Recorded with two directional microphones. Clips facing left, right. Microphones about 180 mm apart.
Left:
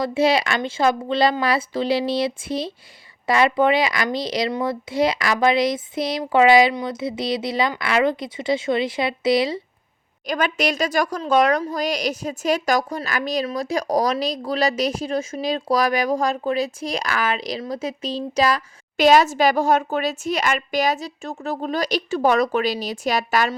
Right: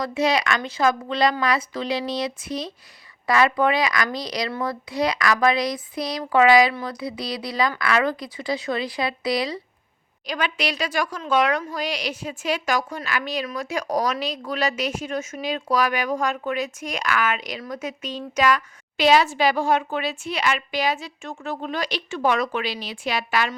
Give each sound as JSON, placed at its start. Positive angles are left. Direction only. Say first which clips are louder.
{"t": 0.0, "sound": "a child's voice", "louder": "left 3 dB", "side_deg": 30}
{"t": 10.2, "sound": "a woman's voice", "louder": "left 4 dB", "side_deg": 45}
{"t": 18.9, "sound": "speech", "louder": "left 3 dB", "side_deg": 45}